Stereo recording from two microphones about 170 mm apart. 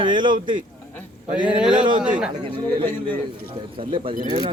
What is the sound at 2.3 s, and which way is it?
Speech, 30° right (ahead or behind).